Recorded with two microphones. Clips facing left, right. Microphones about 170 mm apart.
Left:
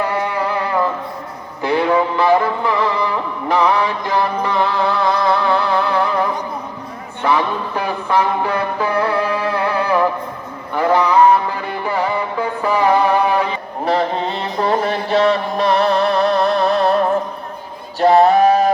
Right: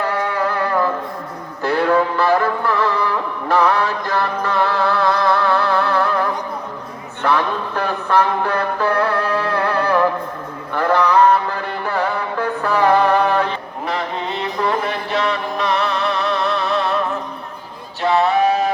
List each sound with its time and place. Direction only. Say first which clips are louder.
0.0 s music: left 1 dB; 15° left (ahead or behind)
7.2 s a sound: left 1 dB; 10° left (ahead or behind)
10.8 s music: left 1 dB; 10° left (ahead or behind)
13.8 s music: left 6 dB; 30° left (ahead or behind)
18.0 s male singing: left 5 dB; 40° left (ahead or behind)